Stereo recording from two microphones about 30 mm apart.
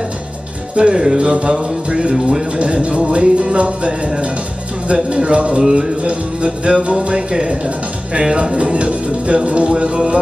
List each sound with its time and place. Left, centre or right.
0.7 s speech: right
1.2 s speech: right
5.1 s speech: right
5.6 s speech: centre
6.0 s speech: right